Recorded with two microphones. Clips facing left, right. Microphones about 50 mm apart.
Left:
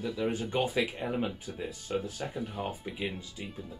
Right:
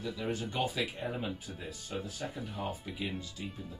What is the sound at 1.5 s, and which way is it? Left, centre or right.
Speech, centre.